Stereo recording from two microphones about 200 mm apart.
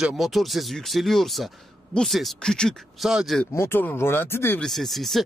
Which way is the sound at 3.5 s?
10° left (ahead or behind).